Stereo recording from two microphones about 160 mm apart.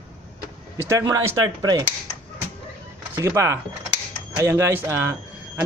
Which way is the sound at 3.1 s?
20° right (ahead or behind).